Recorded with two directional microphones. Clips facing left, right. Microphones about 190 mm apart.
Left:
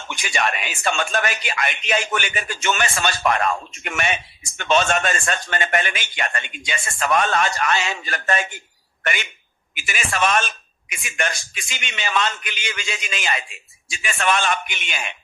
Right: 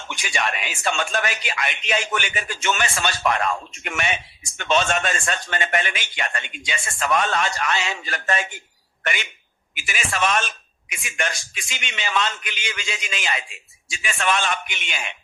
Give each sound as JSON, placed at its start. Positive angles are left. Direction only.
{"t": 0.3, "sound": "a man's voice", "side_deg": 50}
{"t": 9.7, "sound": "a man's voice", "side_deg": 50}